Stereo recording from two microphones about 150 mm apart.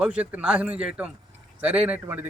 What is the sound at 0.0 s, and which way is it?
A man's voice, 10° right (ahead or behind).